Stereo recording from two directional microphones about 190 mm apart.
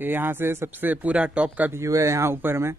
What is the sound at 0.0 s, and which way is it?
A man's voice, 10° right (ahead or behind).